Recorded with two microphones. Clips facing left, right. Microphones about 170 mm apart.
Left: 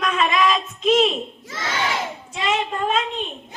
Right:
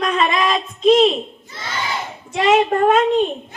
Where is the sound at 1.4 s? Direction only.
90° left.